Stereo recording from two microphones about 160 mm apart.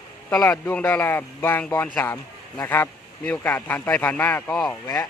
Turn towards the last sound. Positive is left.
turn(degrees=25)  # may be behind; listen again after turning